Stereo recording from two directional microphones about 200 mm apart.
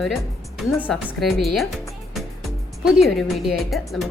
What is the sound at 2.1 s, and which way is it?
Music, centre (ahead or behind).